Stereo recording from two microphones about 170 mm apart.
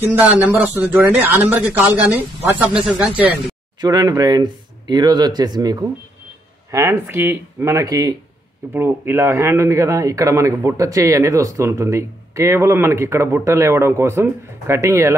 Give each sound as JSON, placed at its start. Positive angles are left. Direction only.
{"t": 0.5, "sound": "speech", "side_deg": -10}
{"t": 3.8, "sound": "speech", "side_deg": -25}